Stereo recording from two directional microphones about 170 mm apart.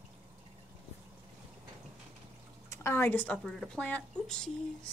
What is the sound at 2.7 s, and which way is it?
Speech, 15° left (ahead or behind).